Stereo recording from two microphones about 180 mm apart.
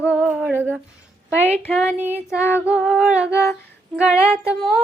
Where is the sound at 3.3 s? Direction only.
15° left (ahead or behind).